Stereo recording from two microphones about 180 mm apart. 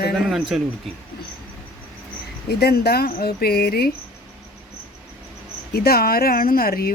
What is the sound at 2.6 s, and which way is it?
Speech, 60° left (ahead or behind).